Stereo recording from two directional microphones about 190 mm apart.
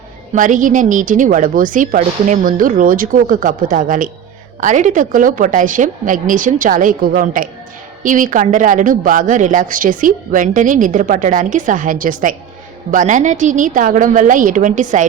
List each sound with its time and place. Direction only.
0.3 s speech: 45° right (ahead or behind)